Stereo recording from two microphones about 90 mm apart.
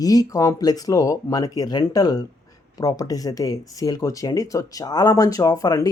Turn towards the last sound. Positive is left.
turn(degrees=40)  # may be behind; listen again after turning